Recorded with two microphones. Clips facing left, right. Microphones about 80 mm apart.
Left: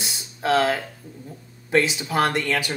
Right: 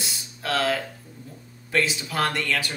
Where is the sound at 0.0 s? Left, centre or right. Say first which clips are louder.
Left 6 dB; left.